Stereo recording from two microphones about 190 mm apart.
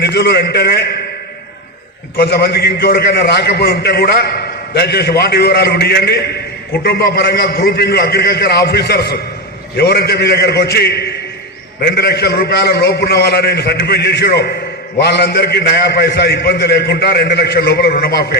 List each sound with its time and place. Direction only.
0.0 s a man's voice: 60° left (ahead or behind)
2.1 s a man's voice: 60° left (ahead or behind)